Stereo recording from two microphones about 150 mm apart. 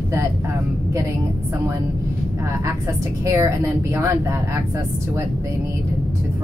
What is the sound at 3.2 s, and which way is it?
A woman's voice, 20° right (ahead or behind).